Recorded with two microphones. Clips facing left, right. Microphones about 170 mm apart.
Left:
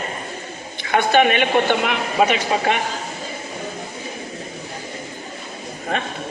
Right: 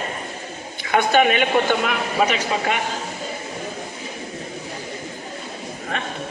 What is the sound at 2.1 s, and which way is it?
Speech, 25° left (ahead or behind).